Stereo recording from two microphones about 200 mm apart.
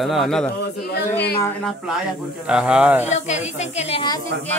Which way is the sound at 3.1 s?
35° left (ahead or behind).